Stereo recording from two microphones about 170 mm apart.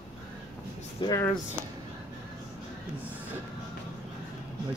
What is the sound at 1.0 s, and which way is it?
Speech, 30° left (ahead or behind).